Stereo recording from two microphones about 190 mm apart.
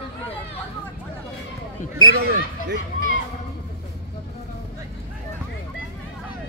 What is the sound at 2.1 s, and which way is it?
Speech, 55° right (ahead or behind).